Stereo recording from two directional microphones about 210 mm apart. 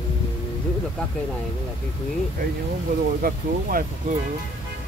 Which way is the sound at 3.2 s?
40° right (ahead or behind).